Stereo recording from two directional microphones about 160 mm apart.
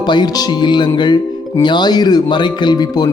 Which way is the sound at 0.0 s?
25° left (ahead or behind).